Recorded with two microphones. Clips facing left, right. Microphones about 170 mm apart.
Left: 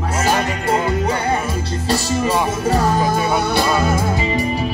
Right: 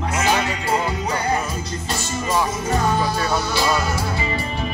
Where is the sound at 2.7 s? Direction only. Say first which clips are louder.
Left 4 dB; 45° left (ahead or behind).